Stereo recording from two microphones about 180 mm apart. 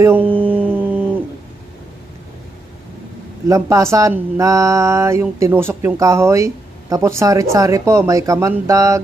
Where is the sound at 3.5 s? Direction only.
15° right (ahead or behind).